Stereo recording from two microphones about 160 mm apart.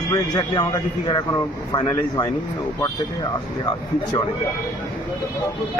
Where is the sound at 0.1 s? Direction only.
25° left (ahead or behind).